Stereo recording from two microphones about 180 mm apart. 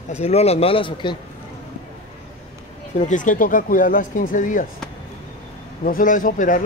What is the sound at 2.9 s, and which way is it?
Speech, 45° left (ahead or behind).